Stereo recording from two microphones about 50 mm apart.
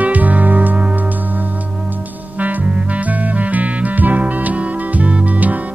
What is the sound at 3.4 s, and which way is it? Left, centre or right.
Music, right.